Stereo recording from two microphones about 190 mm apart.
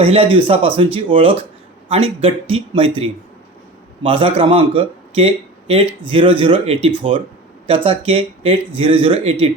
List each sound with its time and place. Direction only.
0.0 s speech: 30° right (ahead or behind)